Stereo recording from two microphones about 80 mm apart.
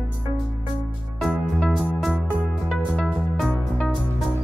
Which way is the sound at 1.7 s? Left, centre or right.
Centre.